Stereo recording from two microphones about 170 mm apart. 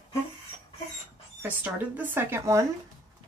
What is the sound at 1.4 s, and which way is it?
Speech, 10° right (ahead or behind).